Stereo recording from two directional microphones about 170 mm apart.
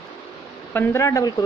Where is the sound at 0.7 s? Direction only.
15° left (ahead or behind).